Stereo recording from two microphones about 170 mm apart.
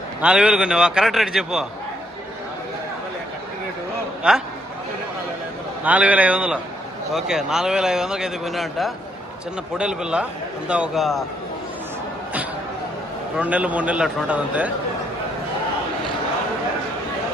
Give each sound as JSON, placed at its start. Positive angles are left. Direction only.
{"t": 0.2, "sound": "a man's voice", "side_deg": -5}
{"t": 4.2, "sound": "a man's voice", "side_deg": -5}
{"t": 5.8, "sound": "a man's voice", "side_deg": -10}
{"t": 13.3, "sound": "a man's voice", "side_deg": -10}